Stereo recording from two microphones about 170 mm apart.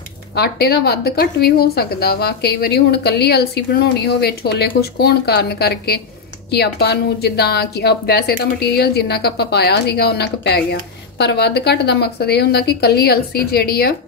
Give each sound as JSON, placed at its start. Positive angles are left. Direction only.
{"t": 0.3, "sound": "a woman's voice", "side_deg": 70}